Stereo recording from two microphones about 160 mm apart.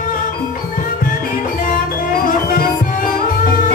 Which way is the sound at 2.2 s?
60° left (ahead or behind).